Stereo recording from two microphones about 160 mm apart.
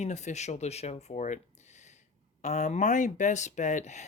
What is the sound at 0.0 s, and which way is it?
Speech, 45° left (ahead or behind).